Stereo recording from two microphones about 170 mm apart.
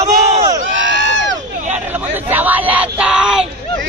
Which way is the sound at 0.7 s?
90° right.